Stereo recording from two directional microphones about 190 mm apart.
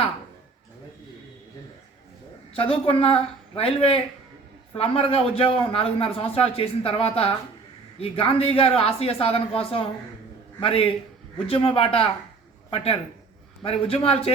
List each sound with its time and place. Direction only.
2.6 s a man's voice: 30° left (ahead or behind)